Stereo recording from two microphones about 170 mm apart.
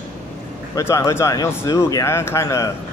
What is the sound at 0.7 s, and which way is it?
Speech, 20° left (ahead or behind).